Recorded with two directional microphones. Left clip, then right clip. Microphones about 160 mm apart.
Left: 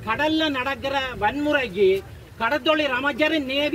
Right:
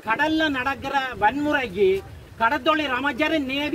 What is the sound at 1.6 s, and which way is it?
A man's voice, 15° right (ahead or behind).